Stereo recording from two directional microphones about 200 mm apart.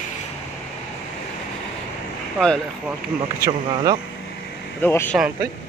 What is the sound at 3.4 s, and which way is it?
Speech, 20° right (ahead or behind).